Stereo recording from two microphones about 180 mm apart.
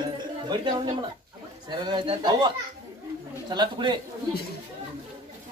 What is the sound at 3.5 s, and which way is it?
Speech, 25° right (ahead or behind).